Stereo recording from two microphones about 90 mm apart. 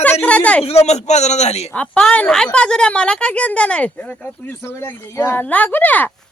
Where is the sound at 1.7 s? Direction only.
15° left (ahead or behind).